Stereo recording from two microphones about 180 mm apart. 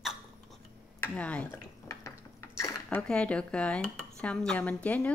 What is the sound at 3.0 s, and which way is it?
Speech, 5° left (ahead or behind).